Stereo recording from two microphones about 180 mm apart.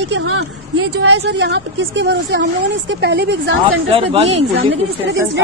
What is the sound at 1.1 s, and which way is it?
A woman's voice, 75° right (ahead or behind).